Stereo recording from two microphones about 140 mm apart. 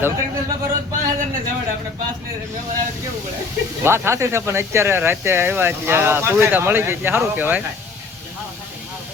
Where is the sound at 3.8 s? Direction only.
20° right (ahead or behind).